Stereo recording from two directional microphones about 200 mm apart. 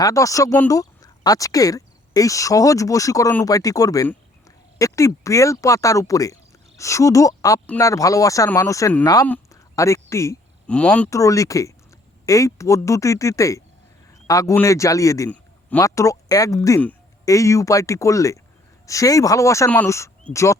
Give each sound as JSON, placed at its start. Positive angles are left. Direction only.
{"t": 0.0, "sound": "a man's voice", "side_deg": 15}